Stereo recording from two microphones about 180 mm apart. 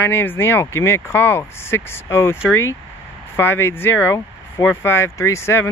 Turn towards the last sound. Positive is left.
turn(degrees=15)  # may be behind; listen again after turning